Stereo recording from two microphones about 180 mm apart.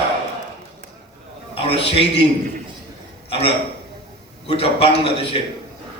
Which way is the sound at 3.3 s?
30° left (ahead or behind).